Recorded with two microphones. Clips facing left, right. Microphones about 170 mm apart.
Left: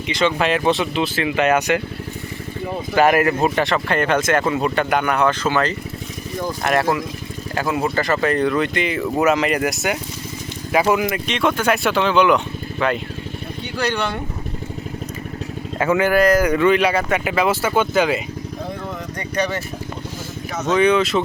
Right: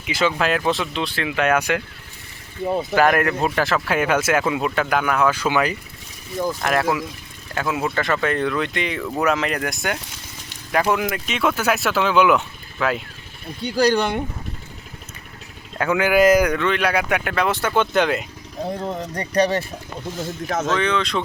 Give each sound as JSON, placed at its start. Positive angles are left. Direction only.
{"t": 0.1, "sound": "speech", "side_deg": -5}
{"t": 2.9, "sound": "speech", "side_deg": 5}
{"t": 6.6, "sound": "speech", "side_deg": 0}
{"t": 13.7, "sound": "speech", "side_deg": -35}
{"t": 15.8, "sound": "speech", "side_deg": 5}
{"t": 18.7, "sound": "a sound", "side_deg": -35}
{"t": 20.7, "sound": "speech", "side_deg": 10}